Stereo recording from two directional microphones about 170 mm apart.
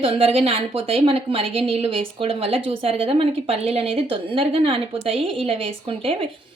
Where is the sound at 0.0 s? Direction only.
35° right (ahead or behind).